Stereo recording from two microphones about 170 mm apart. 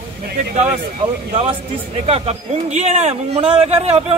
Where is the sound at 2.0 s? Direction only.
35° right (ahead or behind).